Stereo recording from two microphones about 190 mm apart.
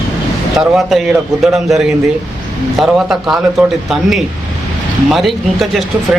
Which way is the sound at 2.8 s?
Centre (ahead or behind).